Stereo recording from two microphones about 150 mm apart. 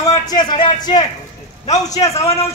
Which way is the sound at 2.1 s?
40° left (ahead or behind).